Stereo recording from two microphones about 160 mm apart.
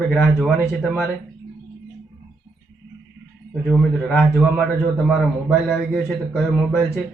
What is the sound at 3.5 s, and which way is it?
A man's voice, centre (ahead or behind).